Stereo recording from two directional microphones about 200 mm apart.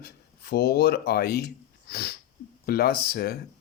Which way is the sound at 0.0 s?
50° left (ahead or behind).